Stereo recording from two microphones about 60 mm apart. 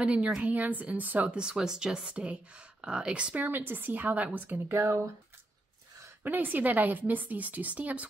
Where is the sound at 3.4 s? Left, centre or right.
Right.